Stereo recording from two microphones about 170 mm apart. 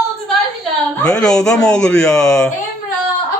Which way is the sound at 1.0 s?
5° left (ahead or behind).